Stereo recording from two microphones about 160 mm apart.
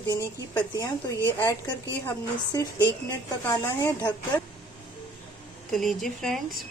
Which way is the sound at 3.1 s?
20° left (ahead or behind).